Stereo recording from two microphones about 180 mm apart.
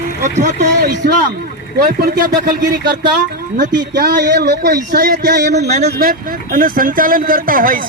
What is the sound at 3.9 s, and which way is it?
Speech, 65° right (ahead or behind).